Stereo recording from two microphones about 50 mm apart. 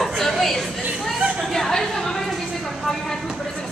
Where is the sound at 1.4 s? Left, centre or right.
Centre.